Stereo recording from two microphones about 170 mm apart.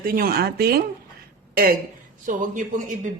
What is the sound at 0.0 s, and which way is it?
Speech, 60° right (ahead or behind).